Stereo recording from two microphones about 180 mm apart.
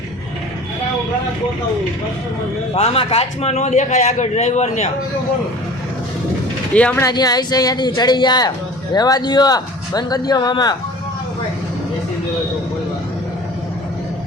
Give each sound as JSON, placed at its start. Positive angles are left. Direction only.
{"t": 2.7, "sound": "a man's voice", "side_deg": 35}
{"t": 6.7, "sound": "speech", "side_deg": 5}
{"t": 7.0, "sound": "speech", "side_deg": 20}